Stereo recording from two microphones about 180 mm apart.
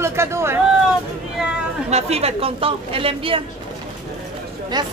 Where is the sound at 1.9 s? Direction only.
35° right (ahead or behind).